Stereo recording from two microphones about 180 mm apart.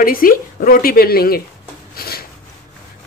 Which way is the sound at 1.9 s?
55° left (ahead or behind).